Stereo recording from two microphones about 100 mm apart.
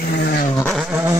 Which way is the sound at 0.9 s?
25° right (ahead or behind).